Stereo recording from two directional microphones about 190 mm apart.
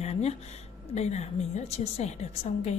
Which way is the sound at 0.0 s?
35° left (ahead or behind).